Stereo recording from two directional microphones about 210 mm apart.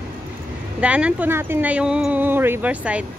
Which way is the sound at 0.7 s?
5° right (ahead or behind).